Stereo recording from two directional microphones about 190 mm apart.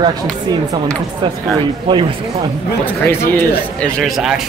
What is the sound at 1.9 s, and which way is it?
Speech, 25° right (ahead or behind).